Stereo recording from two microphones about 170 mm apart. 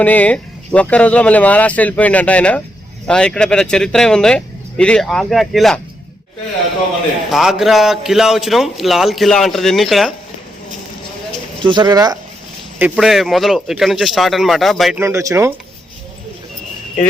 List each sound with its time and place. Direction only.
0.0 s a man's voice: 10° left (ahead or behind)
7.3 s a man's voice: centre (ahead or behind)
11.6 s speech: 25° right (ahead or behind)
12.8 s a man's voice: centre (ahead or behind)
14.9 s speech: 15° right (ahead or behind)